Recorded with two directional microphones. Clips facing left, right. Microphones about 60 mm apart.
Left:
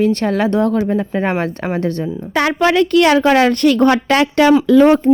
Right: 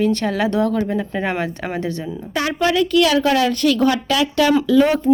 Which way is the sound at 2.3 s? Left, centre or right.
Left.